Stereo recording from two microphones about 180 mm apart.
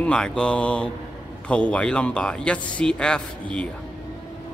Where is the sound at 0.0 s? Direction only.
5° left (ahead or behind).